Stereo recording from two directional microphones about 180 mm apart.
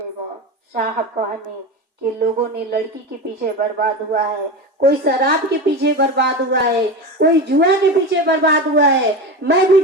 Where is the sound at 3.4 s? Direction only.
55° right (ahead or behind).